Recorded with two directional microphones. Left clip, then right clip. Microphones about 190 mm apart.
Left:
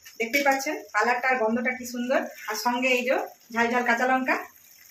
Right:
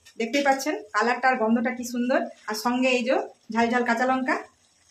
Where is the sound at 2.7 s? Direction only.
45° right (ahead or behind).